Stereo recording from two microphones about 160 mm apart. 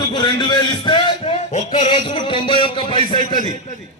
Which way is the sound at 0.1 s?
25° left (ahead or behind).